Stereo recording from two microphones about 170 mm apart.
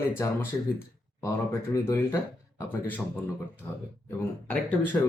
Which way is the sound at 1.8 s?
15° left (ahead or behind).